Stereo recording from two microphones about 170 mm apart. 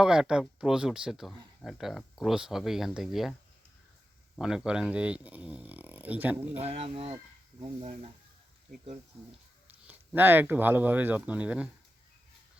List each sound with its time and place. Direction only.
0.0 s speech: 5° right (ahead or behind)
4.4 s speech: 5° right (ahead or behind)
6.6 s speech: 35° right (ahead or behind)
9.6 s speech: 10° right (ahead or behind)